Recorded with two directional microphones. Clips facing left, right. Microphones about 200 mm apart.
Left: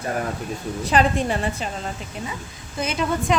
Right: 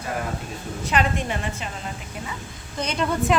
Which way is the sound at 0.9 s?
35° left (ahead or behind).